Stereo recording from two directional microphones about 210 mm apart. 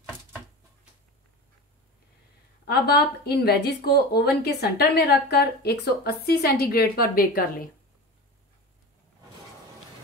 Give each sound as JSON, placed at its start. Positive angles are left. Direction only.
{"t": 2.6, "sound": "speech", "side_deg": 50}